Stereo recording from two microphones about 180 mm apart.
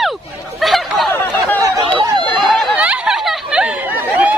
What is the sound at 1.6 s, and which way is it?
Chatter, 15° right (ahead or behind).